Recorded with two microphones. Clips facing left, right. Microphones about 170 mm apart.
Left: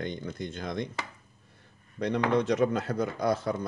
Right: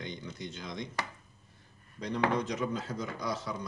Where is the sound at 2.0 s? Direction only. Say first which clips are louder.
Left 5 dB; 70° left (ahead or behind); by 3.6 s 55° left (ahead or behind).